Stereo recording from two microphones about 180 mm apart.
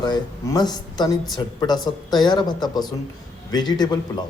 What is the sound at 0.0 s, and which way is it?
A man's voice, 20° left (ahead or behind).